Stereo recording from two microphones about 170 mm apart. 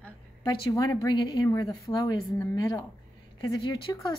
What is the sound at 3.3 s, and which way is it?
Speech, 30° left (ahead or behind).